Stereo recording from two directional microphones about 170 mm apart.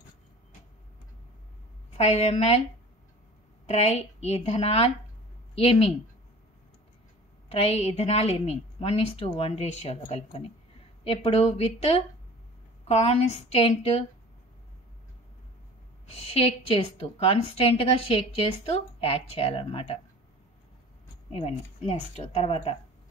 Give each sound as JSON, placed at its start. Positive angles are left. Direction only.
{"t": 2.0, "sound": "a woman's voice", "side_deg": 40}
{"t": 3.6, "sound": "a woman's voice", "side_deg": 40}
{"t": 7.4, "sound": "a woman's voice", "side_deg": 35}
{"t": 16.1, "sound": "a woman's voice", "side_deg": 35}
{"t": 21.3, "sound": "a woman's voice", "side_deg": 35}